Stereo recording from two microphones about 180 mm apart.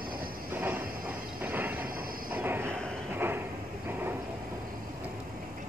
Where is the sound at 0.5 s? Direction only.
10° right (ahead or behind).